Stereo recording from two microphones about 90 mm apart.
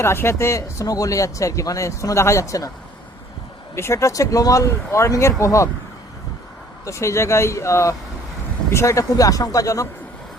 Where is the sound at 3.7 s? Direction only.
30° left (ahead or behind).